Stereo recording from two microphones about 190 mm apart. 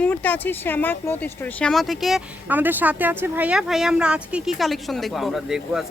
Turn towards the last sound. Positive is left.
turn(degrees=0)  # may be behind; listen again after turning